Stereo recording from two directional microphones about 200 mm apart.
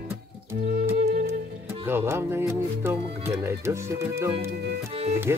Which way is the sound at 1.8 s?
10° right (ahead or behind).